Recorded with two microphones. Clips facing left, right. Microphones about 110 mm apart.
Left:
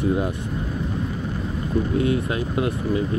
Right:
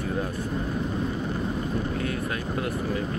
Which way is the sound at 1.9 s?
20° left (ahead or behind).